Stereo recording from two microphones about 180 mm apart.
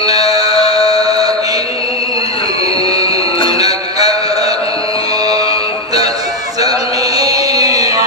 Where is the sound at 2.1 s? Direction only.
30° left (ahead or behind).